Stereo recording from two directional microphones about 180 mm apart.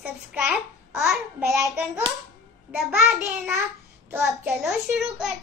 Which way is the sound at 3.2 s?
Centre (ahead or behind).